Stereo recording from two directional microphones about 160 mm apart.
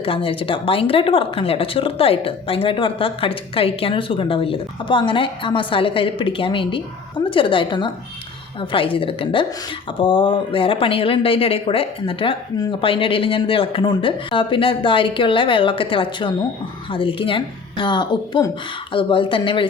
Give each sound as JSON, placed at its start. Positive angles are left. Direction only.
{"t": 0.0, "sound": "speech", "side_deg": 35}